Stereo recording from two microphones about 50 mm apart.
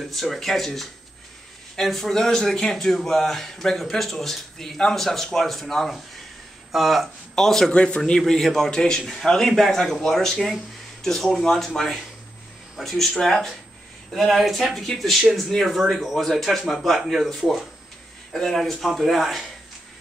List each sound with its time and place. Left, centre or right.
0.1 s speech: centre
7.3 s speech: centre
7.7 s a man's voice: left
8.3 s speech: centre